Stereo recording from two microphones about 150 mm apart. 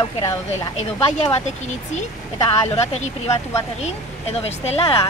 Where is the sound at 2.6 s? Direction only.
45° left (ahead or behind).